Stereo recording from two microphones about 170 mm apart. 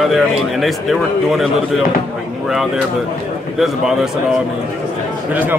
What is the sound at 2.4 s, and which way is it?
Speech, centre (ahead or behind).